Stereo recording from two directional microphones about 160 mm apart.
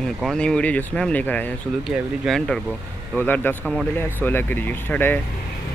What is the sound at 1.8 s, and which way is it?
Speech, centre (ahead or behind).